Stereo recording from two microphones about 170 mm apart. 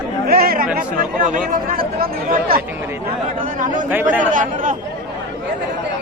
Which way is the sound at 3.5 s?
50° right (ahead or behind).